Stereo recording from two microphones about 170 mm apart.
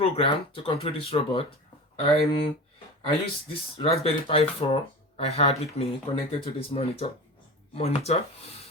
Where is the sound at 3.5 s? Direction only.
35° left (ahead or behind).